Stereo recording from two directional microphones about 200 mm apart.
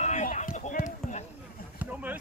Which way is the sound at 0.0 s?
35° left (ahead or behind).